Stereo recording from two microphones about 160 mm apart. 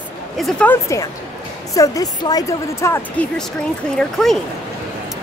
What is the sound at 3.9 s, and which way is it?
Speech, centre (ahead or behind).